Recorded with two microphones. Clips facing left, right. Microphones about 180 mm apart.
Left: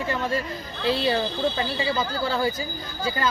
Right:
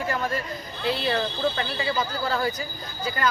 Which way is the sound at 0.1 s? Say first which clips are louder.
Left 1 dB; 25° left (ahead or behind).